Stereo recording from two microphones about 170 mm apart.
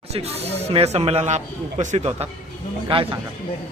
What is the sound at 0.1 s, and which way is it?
Speech, 35° right (ahead or behind).